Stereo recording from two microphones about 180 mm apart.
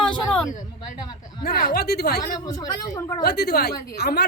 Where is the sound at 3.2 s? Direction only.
60° left (ahead or behind).